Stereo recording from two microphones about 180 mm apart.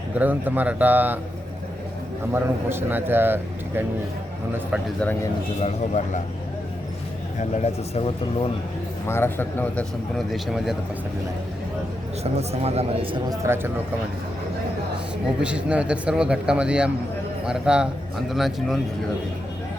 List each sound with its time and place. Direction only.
0.2 s a man's voice: 10° right (ahead or behind)
2.3 s a man's voice: 10° right (ahead or behind)
4.9 s a man's voice: 10° left (ahead or behind)
5.6 s speech: 40° left (ahead or behind)
7.3 s speech: 40° left (ahead or behind)
9.0 s a man's voice: 15° left (ahead or behind)
10.2 s speech: centre (ahead or behind)
12.2 s speech: 35° right (ahead or behind)
13.2 s a man's voice: 20° right (ahead or behind)
15.4 s speech: 5° right (ahead or behind)